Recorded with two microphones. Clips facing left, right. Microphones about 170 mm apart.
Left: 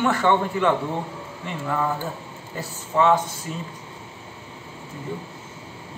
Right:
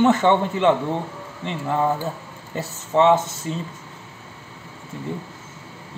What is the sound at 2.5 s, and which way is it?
Speech, 25° right (ahead or behind).